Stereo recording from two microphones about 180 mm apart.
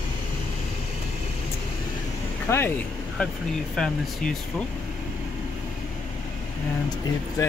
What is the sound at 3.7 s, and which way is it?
Speech, centre (ahead or behind).